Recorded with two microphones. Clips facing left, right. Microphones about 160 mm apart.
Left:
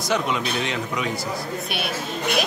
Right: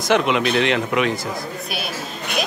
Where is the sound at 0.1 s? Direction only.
80° right.